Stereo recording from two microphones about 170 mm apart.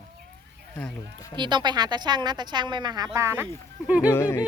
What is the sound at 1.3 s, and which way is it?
Speech, 25° right (ahead or behind).